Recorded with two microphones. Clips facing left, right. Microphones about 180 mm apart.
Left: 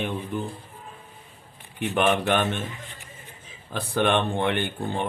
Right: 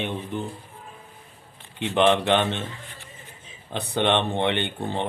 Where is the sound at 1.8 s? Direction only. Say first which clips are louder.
Right 3 dB; 20° right (ahead or behind).